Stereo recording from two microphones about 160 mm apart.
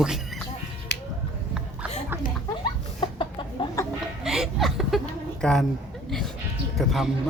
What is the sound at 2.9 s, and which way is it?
Chicken, 30° left (ahead or behind).